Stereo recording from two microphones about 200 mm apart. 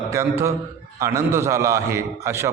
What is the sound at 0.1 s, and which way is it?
A man's voice, 15° right (ahead or behind).